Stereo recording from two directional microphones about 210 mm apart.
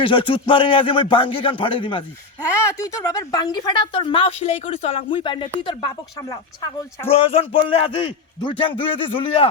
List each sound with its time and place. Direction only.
0.0 s speech: 25° left (ahead or behind)
2.6 s speech: 15° left (ahead or behind)